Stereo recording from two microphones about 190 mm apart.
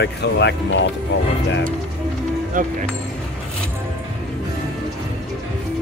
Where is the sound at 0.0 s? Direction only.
65° left (ahead or behind).